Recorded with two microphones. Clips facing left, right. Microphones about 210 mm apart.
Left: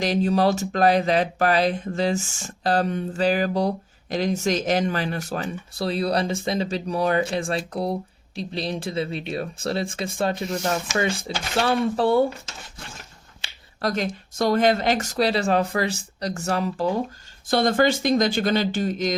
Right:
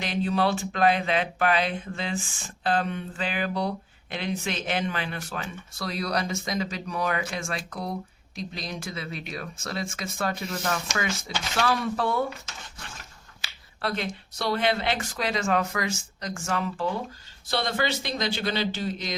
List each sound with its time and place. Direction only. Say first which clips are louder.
0.0 s speech: left 5 dB; 40° left (ahead or behind)
13.4 s speech: left 5 dB; 40° left (ahead or behind)